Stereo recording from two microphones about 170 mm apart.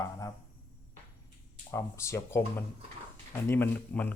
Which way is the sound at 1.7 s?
15° left (ahead or behind).